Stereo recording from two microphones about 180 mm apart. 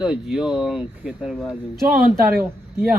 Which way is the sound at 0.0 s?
5° right (ahead or behind).